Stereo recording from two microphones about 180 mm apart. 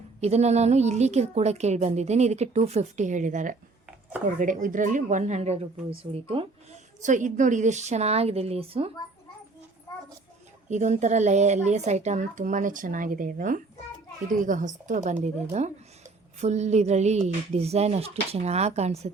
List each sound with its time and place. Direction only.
0.2 s a woman's voice: 35° right (ahead or behind)
7.0 s a woman's voice: 45° right (ahead or behind)
10.7 s a woman's voice: 40° right (ahead or behind)